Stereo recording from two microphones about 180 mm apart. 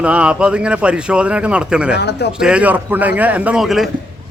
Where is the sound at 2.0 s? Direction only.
65° left (ahead or behind).